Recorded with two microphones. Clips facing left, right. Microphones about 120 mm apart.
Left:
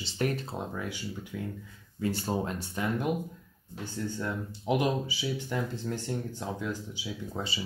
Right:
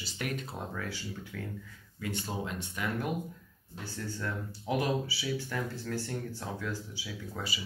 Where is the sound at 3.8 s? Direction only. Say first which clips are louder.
Left 4 dB; 20° left (ahead or behind).